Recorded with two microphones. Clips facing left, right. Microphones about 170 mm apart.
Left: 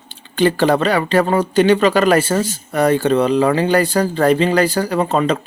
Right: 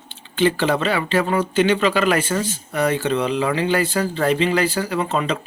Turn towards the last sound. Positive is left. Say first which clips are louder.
# left 5 dB
turn(degrees=45)  # may be behind; listen again after turning